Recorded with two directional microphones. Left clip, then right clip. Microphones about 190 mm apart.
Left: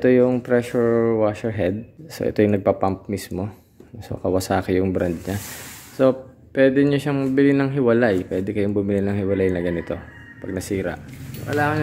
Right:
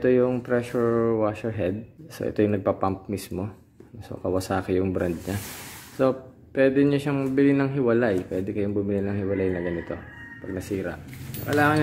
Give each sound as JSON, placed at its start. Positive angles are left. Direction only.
{"t": 0.0, "sound": "a man's voice", "side_deg": 15}
{"t": 11.4, "sound": "speech", "side_deg": -15}